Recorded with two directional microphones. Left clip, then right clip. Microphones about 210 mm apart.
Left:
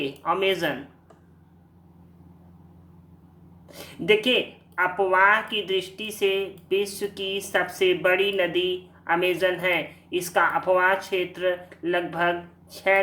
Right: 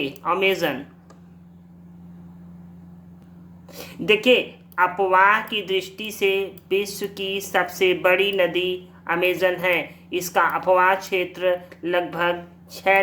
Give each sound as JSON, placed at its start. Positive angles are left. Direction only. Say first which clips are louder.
{"t": 0.0, "sound": "speech", "louder": "right 3 dB", "side_deg": -20}
{"t": 3.7, "sound": "a woman's voice", "louder": "right 1 dB", "side_deg": -15}